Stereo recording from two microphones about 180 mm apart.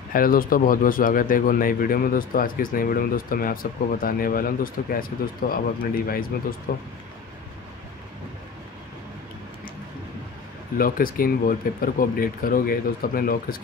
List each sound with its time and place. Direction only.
0.1 s speech: 50° left (ahead or behind)
10.8 s speech: 50° left (ahead or behind)